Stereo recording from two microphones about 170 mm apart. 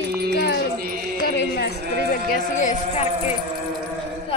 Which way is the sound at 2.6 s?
45° left (ahead or behind).